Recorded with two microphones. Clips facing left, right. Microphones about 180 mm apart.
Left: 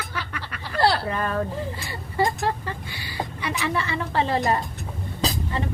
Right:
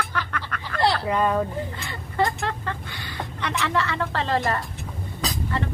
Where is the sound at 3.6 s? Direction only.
75° right (ahead or behind).